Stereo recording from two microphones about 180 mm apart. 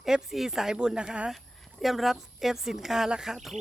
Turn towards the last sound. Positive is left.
turn(degrees=0)  # may be behind; listen again after turning